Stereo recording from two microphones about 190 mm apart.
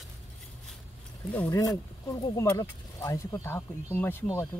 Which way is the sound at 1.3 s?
15° left (ahead or behind).